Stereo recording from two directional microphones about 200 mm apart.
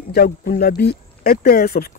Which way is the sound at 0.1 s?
50° left (ahead or behind).